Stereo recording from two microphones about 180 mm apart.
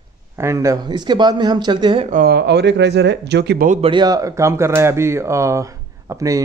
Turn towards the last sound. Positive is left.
turn(degrees=-20)  # may be behind; listen again after turning